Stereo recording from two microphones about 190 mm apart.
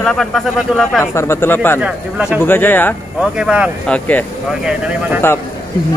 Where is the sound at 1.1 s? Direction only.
15° left (ahead or behind).